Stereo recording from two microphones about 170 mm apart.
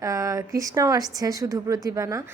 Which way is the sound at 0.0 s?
20° right (ahead or behind).